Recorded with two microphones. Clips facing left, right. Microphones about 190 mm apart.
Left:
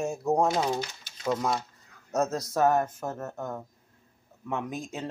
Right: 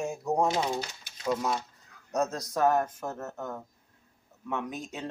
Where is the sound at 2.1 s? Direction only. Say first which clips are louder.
Left 2 dB; 5° left (ahead or behind).